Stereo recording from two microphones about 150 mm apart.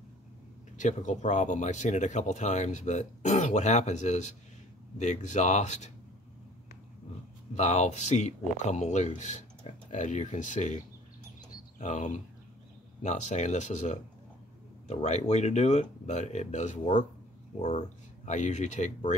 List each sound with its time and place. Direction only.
0.7 s speech: 55° left (ahead or behind)
7.5 s speech: 50° left (ahead or behind)
11.8 s speech: 55° left (ahead or behind)